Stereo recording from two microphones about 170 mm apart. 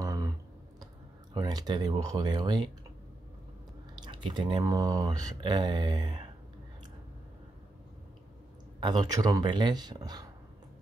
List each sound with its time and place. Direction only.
0.0 s clicking: 20° right (ahead or behind)
1.3 s speech: 25° right (ahead or behind)
3.9 s speech: 25° right (ahead or behind)
8.7 s speech: 25° right (ahead or behind)